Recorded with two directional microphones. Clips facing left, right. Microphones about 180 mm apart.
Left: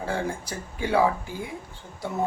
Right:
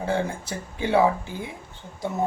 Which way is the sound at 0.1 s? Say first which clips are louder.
Right 3 dB; 25° right (ahead or behind).